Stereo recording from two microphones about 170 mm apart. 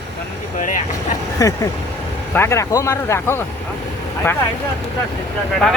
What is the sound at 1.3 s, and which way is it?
Speech, 20° left (ahead or behind).